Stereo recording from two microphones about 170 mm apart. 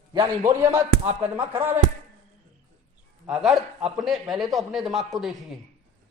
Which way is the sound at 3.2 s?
5° right (ahead or behind).